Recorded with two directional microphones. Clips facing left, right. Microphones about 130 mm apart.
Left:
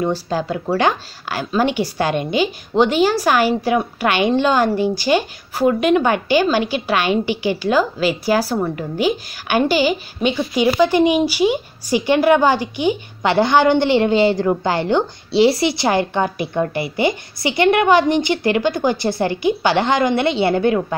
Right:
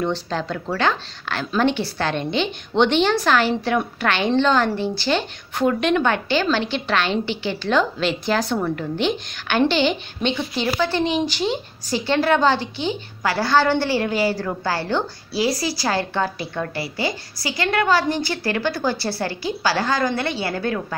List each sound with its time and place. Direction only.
0.0 s a woman's voice: 10° left (ahead or behind)